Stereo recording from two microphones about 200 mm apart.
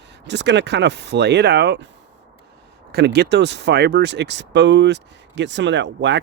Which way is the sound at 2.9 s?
55° right (ahead or behind).